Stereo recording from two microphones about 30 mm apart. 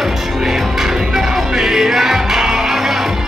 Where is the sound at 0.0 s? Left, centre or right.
Centre.